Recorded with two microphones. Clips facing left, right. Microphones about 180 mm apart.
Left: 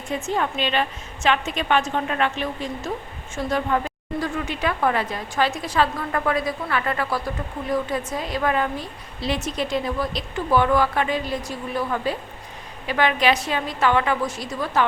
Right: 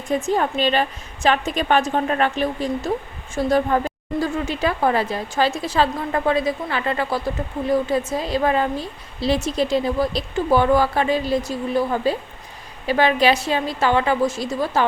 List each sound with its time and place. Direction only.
0.3 s a woman's voice: 40° right (ahead or behind)